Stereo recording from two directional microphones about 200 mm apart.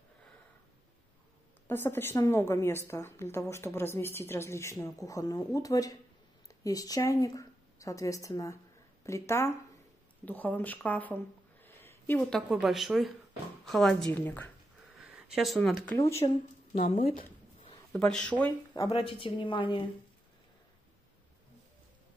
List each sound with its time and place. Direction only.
1.7 s a woman's voice: 10° left (ahead or behind)
15.0 s speech: 5° right (ahead or behind)
17.0 s speech: 45° left (ahead or behind)
17.9 s a woman's voice: 5° left (ahead or behind)
18.9 s a woman's voice: 25° left (ahead or behind)